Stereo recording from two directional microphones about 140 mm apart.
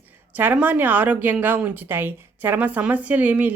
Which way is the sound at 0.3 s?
10° right (ahead or behind).